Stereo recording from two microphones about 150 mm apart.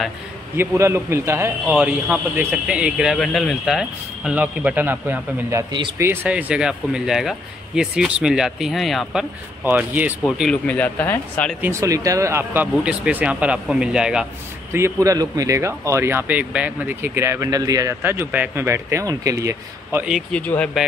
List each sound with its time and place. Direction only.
0.6 s speech: 15° right (ahead or behind)
5.7 s speech: 35° right (ahead or behind)
5.9 s speech: 10° right (ahead or behind)
9.7 s speech: 10° right (ahead or behind)
10.5 s speech: 10° left (ahead or behind)
11.6 s speech: 20° right (ahead or behind)
12.7 s speech: 5° right (ahead or behind)
14.7 s speech: 20° right (ahead or behind)
20.1 s speech: 5° left (ahead or behind)